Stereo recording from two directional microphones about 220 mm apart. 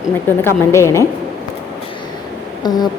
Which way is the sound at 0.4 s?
10° left (ahead or behind).